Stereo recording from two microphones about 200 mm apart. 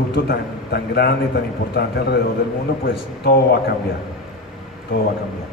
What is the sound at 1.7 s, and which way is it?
Speech, 55° left (ahead or behind).